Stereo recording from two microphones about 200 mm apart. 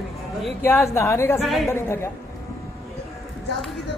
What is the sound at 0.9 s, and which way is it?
A woman's voice, 15° left (ahead or behind).